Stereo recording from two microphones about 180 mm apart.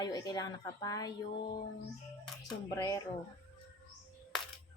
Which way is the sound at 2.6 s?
20° left (ahead or behind).